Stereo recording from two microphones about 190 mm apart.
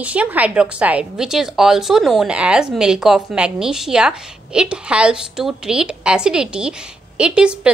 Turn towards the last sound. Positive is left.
turn(degrees=-5)  # may be behind; listen again after turning